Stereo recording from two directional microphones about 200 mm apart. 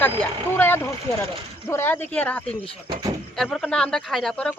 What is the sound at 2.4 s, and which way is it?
Speech, 30° left (ahead or behind).